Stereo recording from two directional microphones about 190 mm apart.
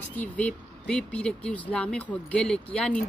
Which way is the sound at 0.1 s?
10° left (ahead or behind).